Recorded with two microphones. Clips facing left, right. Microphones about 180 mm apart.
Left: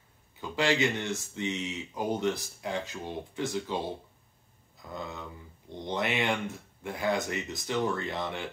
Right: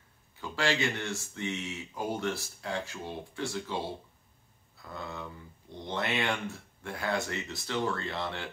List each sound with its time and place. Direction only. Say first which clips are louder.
0.4 s speech: left 3 dB; 20° left (ahead or behind)